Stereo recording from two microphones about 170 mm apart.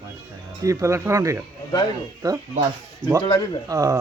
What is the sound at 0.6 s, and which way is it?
Speech, 20° right (ahead or behind).